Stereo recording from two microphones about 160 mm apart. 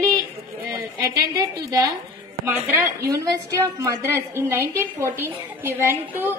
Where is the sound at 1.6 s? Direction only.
20° right (ahead or behind).